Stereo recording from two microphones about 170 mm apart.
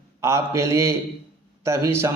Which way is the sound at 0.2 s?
15° right (ahead or behind).